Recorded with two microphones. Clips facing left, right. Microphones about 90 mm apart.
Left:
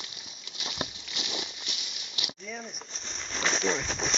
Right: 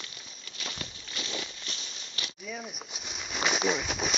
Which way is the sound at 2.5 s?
5° right (ahead or behind).